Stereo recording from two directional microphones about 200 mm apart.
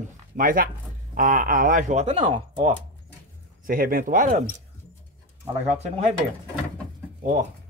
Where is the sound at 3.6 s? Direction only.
45° right (ahead or behind).